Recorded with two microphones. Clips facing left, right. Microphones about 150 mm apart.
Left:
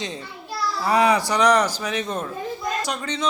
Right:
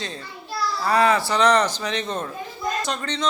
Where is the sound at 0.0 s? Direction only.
20° left (ahead or behind).